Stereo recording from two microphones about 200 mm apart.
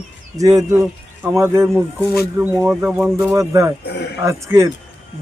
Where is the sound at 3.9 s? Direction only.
55° left (ahead or behind).